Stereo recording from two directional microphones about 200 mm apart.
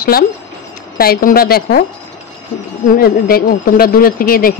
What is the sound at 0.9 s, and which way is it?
Speech, 50° left (ahead or behind).